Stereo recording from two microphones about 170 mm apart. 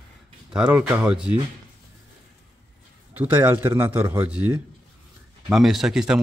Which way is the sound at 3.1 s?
10° right (ahead or behind).